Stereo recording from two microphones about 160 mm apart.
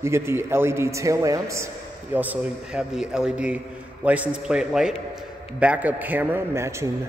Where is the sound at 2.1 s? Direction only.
5° right (ahead or behind).